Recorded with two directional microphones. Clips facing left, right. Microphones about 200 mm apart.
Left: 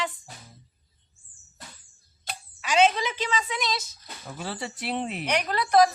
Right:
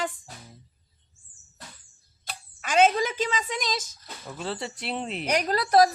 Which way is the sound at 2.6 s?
50° right (ahead or behind).